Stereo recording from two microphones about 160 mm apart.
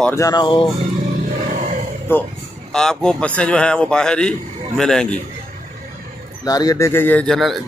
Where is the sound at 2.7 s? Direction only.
5° left (ahead or behind).